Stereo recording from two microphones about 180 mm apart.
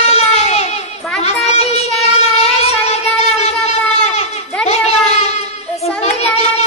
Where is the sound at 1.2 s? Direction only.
40° left (ahead or behind).